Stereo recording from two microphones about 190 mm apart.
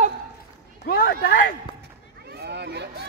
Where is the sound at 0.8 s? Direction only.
55° left (ahead or behind).